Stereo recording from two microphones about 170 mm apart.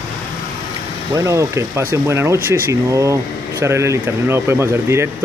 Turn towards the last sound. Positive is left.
turn(degrees=-15)  # may be behind; listen again after turning